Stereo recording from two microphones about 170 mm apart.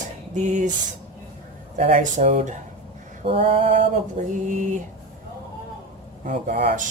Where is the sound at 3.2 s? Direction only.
35° right (ahead or behind).